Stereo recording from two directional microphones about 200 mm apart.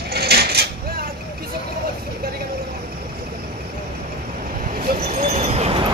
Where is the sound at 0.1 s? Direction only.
55° right (ahead or behind).